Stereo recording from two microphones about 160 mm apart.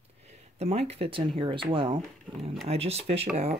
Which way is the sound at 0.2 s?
40° right (ahead or behind).